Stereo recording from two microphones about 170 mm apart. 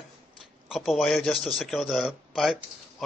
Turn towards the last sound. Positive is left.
turn(degrees=0)  # may be behind; listen again after turning